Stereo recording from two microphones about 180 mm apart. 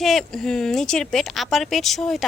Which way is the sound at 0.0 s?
Centre (ahead or behind).